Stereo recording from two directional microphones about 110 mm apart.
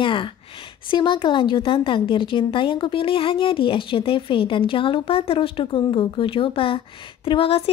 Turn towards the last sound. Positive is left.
turn(degrees=60)  # may be behind; listen again after turning